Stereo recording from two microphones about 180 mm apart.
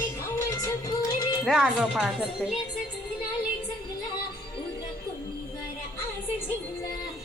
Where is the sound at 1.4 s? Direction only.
Centre (ahead or behind).